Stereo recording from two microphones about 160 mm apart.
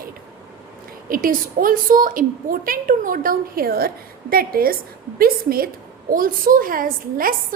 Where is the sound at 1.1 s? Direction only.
60° right (ahead or behind).